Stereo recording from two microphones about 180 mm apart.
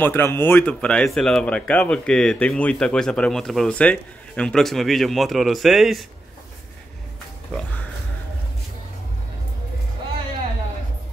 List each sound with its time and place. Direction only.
0.0 s speech: 10° left (ahead or behind)
7.5 s speech: 5° left (ahead or behind)